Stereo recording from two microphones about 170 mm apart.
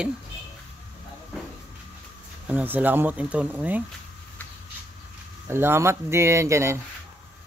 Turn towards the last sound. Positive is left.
turn(degrees=-15)  # may be behind; listen again after turning